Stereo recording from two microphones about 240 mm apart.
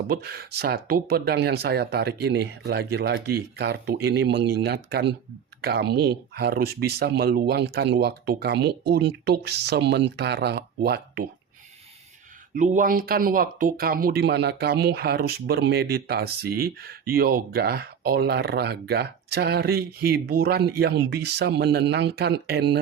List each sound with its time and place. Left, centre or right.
0.1 s speech: right
12.5 s speech: right